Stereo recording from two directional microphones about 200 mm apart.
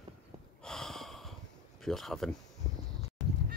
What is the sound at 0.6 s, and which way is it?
Gasp, centre (ahead or behind).